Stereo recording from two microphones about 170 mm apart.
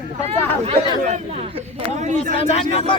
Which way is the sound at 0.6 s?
40° right (ahead or behind).